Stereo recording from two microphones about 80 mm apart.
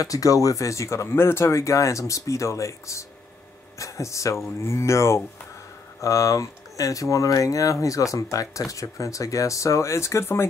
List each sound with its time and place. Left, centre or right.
0.0 s speech: left